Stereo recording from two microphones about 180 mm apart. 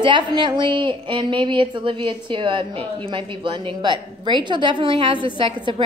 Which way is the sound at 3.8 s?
25° right (ahead or behind).